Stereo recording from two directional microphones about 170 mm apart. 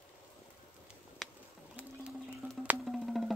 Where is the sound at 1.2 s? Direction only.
Centre (ahead or behind).